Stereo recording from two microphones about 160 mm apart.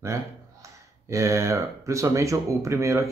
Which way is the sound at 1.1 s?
20° right (ahead or behind).